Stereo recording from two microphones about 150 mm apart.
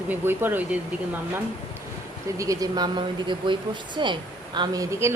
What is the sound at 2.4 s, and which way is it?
Speech, 25° right (ahead or behind).